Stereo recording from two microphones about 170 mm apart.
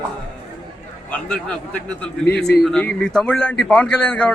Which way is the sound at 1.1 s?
5° left (ahead or behind).